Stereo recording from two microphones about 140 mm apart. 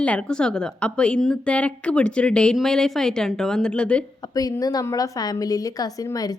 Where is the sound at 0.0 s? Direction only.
10° left (ahead or behind).